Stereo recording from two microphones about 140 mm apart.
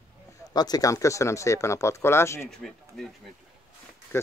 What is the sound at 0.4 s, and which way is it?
Speech, 30° left (ahead or behind).